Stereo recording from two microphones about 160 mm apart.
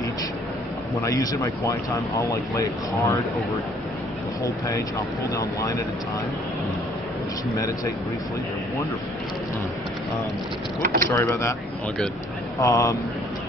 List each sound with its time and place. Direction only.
0.9 s speech: 20° left (ahead or behind)
4.4 s speech: 20° left (ahead or behind)
7.5 s speech: 20° left (ahead or behind)
10.8 s speech: 55° right (ahead or behind)
11.1 s speech: 15° left (ahead or behind)
12.5 s speech: 20° left (ahead or behind)